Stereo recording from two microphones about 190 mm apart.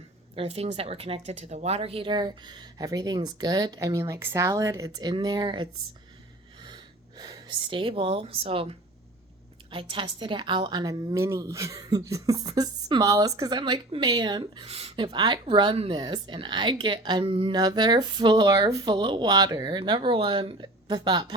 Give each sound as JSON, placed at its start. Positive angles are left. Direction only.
{"t": 0.3, "sound": "a woman's voice", "side_deg": -30}
{"t": 7.2, "sound": "a woman's voice", "side_deg": -25}
{"t": 9.7, "sound": "a woman's voice", "side_deg": -25}